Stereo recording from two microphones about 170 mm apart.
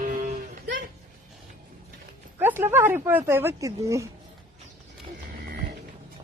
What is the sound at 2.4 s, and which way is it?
Speech, 15° right (ahead or behind).